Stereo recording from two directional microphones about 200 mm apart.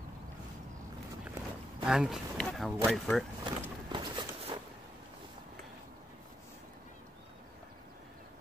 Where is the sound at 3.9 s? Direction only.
25° right (ahead or behind).